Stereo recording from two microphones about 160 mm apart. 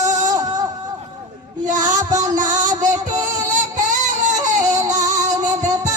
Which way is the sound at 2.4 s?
50° right (ahead or behind).